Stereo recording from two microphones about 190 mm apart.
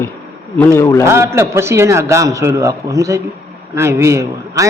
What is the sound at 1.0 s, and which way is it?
A man's voice, 15° right (ahead or behind).